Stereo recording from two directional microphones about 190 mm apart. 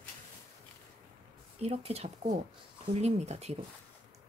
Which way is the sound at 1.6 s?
35° right (ahead or behind).